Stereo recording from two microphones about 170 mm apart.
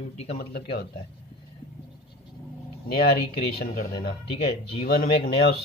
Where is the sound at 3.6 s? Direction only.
70° left (ahead or behind).